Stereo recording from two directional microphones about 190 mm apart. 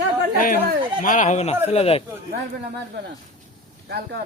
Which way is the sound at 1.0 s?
45° left (ahead or behind).